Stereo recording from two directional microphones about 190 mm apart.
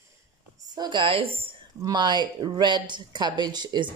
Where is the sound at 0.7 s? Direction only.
25° right (ahead or behind).